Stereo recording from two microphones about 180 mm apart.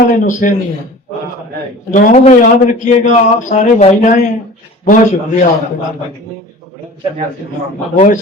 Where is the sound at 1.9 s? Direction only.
40° left (ahead or behind).